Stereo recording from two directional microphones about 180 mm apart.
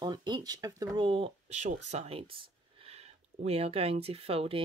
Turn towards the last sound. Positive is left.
turn(degrees=-30)  # may be behind; listen again after turning